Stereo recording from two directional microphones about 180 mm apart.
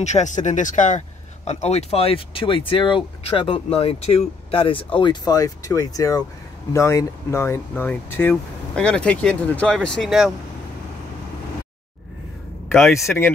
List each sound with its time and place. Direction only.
0.0 s speech: 40° left (ahead or behind); by 10.3 s centre (ahead or behind)
13.1 s speech: 10° left (ahead or behind)